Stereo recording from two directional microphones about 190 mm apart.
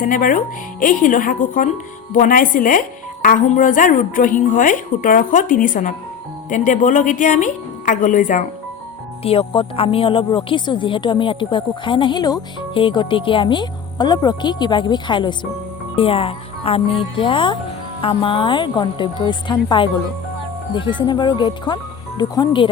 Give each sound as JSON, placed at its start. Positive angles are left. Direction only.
{"t": 0.0, "sound": "a woman's voice", "side_deg": 45}
{"t": 9.2, "sound": "speech", "side_deg": 30}